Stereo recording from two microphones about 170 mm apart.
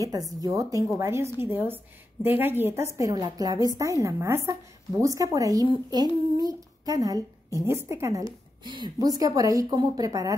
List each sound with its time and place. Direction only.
0.0 s a woman's voice: 20° right (ahead or behind)